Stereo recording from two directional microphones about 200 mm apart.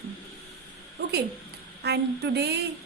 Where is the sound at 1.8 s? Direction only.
55° right (ahead or behind).